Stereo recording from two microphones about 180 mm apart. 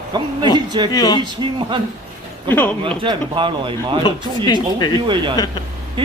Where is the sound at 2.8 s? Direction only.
30° right (ahead or behind).